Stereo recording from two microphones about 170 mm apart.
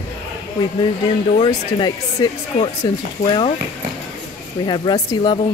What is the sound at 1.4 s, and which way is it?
Speech, 25° left (ahead or behind).